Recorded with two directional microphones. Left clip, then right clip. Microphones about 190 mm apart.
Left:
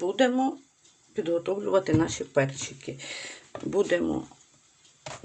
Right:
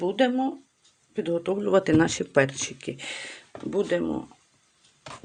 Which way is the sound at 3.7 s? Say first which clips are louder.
Left 1 dB; 5° right (ahead or behind).